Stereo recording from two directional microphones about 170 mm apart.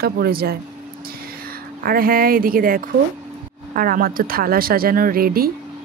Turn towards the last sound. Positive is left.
turn(degrees=-60)  # may be behind; listen again after turning